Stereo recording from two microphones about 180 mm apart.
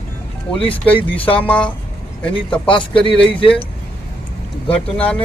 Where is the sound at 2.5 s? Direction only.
30° left (ahead or behind).